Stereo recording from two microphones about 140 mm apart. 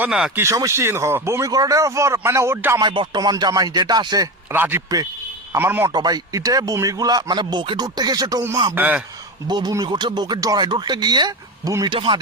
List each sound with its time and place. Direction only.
0.0 s speech: 10° right (ahead or behind)
0.4 s speech: 20° right (ahead or behind)
2.8 s speech: 35° right (ahead or behind)
4.5 s speech: 15° right (ahead or behind)
5.9 s speech: 30° right (ahead or behind)
8.7 s speech: 10° right (ahead or behind)
9.5 s speech: 30° right (ahead or behind)
11.9 s speech: 35° right (ahead or behind)